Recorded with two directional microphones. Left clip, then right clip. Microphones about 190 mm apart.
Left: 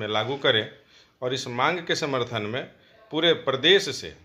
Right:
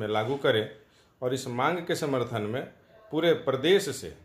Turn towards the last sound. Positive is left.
turn(degrees=5)  # may be behind; listen again after turning